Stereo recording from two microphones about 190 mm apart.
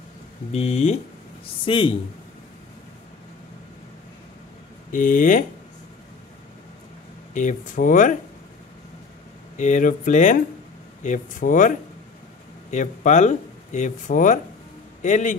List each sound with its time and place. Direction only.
0.5 s speech: 35° left (ahead or behind)
4.9 s speech: 45° left (ahead or behind)
7.3 s speech: 40° left (ahead or behind)
9.6 s speech: 40° left (ahead or behind)
12.7 s a man's voice: 40° left (ahead or behind)